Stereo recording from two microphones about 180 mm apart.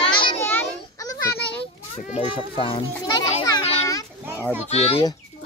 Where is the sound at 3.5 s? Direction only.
20° left (ahead or behind).